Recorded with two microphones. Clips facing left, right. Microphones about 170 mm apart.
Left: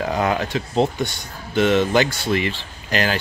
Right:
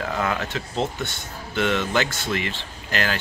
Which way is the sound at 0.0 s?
20° left (ahead or behind).